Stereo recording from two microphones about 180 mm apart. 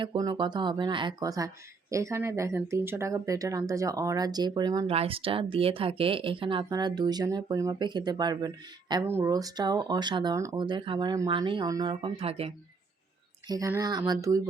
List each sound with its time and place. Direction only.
0.0 s speech: 25° right (ahead or behind)
4.9 s speech: 30° right (ahead or behind)
13.5 s speech: 20° right (ahead or behind)